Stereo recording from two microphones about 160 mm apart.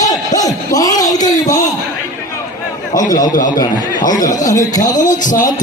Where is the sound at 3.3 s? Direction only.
55° left (ahead or behind).